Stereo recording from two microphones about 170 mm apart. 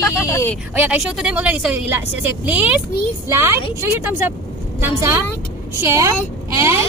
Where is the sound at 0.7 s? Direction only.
10° right (ahead or behind).